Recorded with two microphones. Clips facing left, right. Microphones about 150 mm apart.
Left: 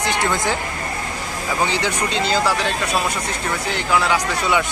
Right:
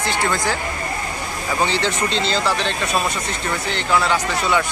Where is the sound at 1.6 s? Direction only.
15° left (ahead or behind).